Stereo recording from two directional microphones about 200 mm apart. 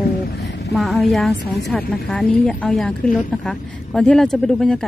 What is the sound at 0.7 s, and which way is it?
A woman's voice, centre (ahead or behind).